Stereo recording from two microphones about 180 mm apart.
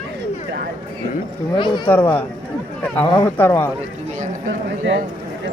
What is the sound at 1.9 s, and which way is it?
Speech, 10° left (ahead or behind).